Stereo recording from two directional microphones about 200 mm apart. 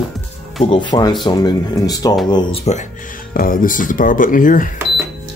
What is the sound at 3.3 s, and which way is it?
Speech, 45° left (ahead or behind).